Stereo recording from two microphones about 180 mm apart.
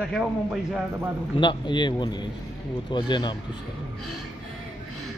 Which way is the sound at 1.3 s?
25° left (ahead or behind).